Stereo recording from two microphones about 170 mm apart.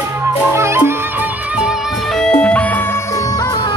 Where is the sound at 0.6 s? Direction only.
15° right (ahead or behind).